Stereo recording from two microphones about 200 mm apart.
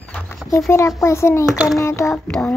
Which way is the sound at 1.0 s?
15° left (ahead or behind).